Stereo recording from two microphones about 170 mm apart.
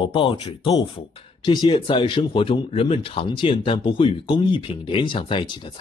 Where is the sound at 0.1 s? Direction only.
30° left (ahead or behind).